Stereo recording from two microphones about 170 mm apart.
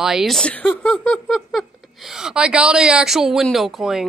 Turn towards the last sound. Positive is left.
turn(degrees=0)  # may be behind; listen again after turning